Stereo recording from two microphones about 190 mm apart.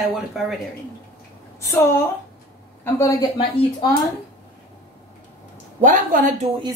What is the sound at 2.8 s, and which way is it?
Speech, 20° left (ahead or behind).